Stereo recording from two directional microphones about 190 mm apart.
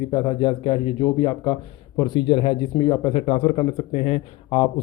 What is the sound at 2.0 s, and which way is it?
Speech, 25° left (ahead or behind).